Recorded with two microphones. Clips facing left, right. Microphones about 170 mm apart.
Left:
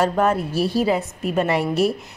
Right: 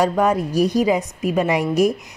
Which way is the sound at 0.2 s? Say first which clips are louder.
Right 2 dB; 15° right (ahead or behind).